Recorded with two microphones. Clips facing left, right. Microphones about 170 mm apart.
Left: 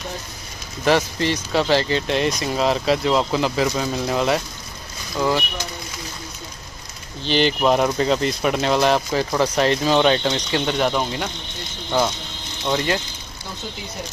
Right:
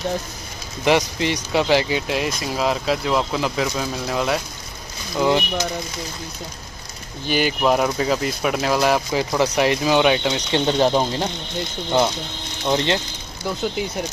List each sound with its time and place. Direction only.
0.8 s speech: 15° right (ahead or behind); by 4.4 s centre (ahead or behind)
7.2 s speech: 10° right (ahead or behind)
10.5 s speech: 30° right (ahead or behind)